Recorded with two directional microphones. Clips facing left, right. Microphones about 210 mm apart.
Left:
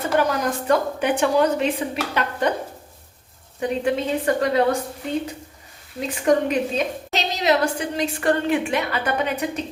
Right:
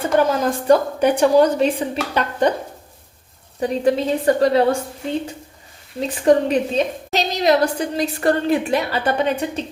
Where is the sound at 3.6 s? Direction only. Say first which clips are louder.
Right 4 dB; 35° right (ahead or behind).